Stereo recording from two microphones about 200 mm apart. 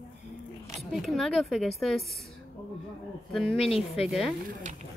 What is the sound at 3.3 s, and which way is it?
A woman's voice, centre (ahead or behind).